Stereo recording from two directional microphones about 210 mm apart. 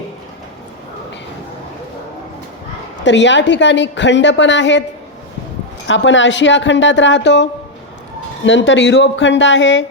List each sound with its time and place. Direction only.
3.0 s a woman's voice: 60° left (ahead or behind)
5.9 s a woman's voice: 60° left (ahead or behind)
8.4 s a woman's voice: 60° left (ahead or behind)